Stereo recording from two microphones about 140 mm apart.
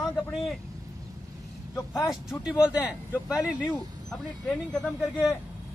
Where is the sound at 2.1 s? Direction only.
5° right (ahead or behind).